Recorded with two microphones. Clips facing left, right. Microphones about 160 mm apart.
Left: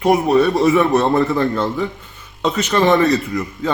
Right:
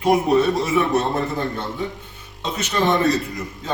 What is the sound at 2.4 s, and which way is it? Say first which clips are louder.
Speech: left 6 dB; 70° left (ahead or behind).